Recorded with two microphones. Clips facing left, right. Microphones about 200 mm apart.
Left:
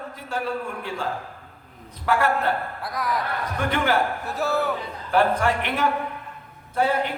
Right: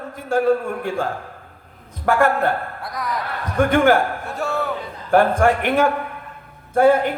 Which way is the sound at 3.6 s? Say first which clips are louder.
Right 8 dB; 50° right (ahead or behind).